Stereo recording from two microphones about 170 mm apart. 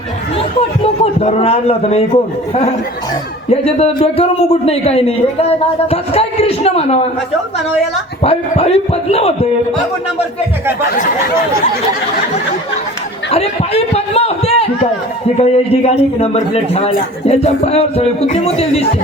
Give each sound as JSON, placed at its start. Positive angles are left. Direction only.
{"t": 1.2, "sound": "a man's voice", "side_deg": 35}
{"t": 3.5, "sound": "a man's voice", "side_deg": 35}
{"t": 8.2, "sound": "a man's voice", "side_deg": 35}
{"t": 10.8, "sound": "speech", "side_deg": 50}
{"t": 13.3, "sound": "a man's voice", "side_deg": 35}